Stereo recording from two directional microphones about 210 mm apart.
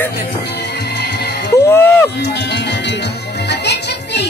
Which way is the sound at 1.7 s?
10° left (ahead or behind).